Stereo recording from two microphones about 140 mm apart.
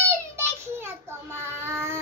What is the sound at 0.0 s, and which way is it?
Child singing, 20° right (ahead or behind).